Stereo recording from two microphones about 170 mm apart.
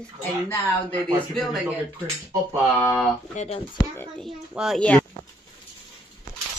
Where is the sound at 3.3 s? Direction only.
40° left (ahead or behind).